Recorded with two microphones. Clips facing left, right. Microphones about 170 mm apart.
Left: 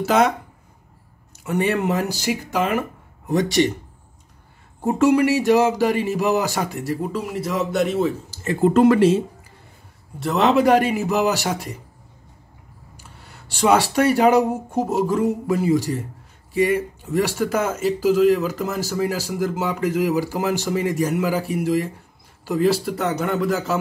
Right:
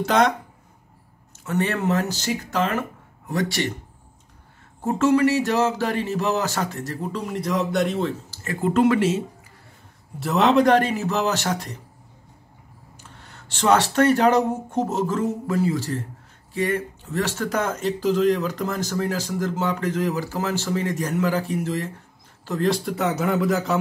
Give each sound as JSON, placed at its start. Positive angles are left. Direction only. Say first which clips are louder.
{"t": 0.0, "sound": "a man's voice", "louder": "left 2 dB", "side_deg": 5}
{"t": 1.4, "sound": "speech", "louder": "left 3 dB", "side_deg": 15}
{"t": 4.8, "sound": "speech", "louder": "left 2 dB", "side_deg": 15}
{"t": 8.6, "sound": "speech", "louder": "left 4 dB", "side_deg": 40}
{"t": 10.1, "sound": "speech", "louder": "even", "side_deg": 0}
{"t": 12.9, "sound": "a man's voice", "louder": "left 1 dB", "side_deg": 10}